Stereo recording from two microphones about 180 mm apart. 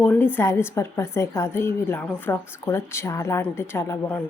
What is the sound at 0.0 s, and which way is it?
A woman's voice, 10° left (ahead or behind).